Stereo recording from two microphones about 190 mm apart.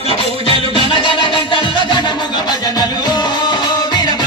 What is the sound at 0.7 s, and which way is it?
Music, 25° left (ahead or behind).